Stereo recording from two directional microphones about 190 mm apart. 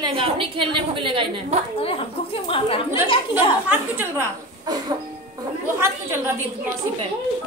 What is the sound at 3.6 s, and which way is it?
A woman's voice, 10° right (ahead or behind).